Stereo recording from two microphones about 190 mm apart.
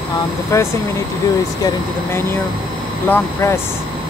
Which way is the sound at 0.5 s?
15° left (ahead or behind).